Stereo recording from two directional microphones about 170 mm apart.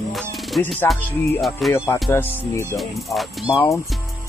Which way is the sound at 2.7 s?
Centre (ahead or behind).